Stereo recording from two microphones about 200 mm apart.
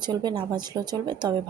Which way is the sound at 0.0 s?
20° right (ahead or behind).